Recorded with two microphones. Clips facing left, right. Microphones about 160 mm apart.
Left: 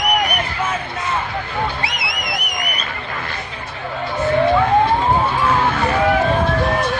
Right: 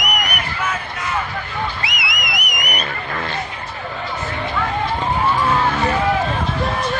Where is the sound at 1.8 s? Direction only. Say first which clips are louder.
Left 2 dB; 30° left (ahead or behind).